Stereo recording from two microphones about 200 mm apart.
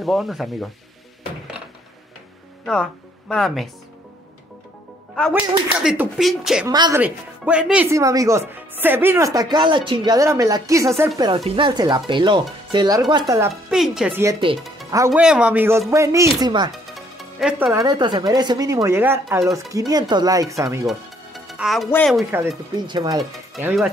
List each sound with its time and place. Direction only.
0.0 s speech: centre (ahead or behind)
2.6 s speech: 5° left (ahead or behind)
5.3 s speech: 5° right (ahead or behind)
6.7 s speech: 20° right (ahead or behind)
7.0 s speech: 5° right (ahead or behind)
11.1 s speech: 25° right (ahead or behind)
13.7 s speech: centre (ahead or behind); by 16.7 s 20° right (ahead or behind)
16.9 s music: 5° right (ahead or behind)
17.7 s speech: 20° right (ahead or behind)
20.8 s music: centre (ahead or behind)
21.9 s speech: 5° left (ahead or behind)
22.8 s speech: 20° right (ahead or behind)
23.5 s speech: centre (ahead or behind)